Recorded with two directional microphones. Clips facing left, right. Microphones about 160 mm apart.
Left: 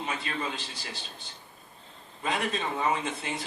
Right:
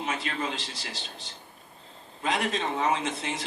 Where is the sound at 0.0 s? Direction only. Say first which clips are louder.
Right 2 dB; 90° right.